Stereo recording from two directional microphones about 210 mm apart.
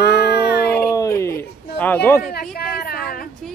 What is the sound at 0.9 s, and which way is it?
Speech, 15° left (ahead or behind).